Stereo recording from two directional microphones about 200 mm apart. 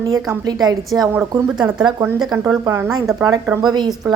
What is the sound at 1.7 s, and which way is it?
Speech, 15° right (ahead or behind).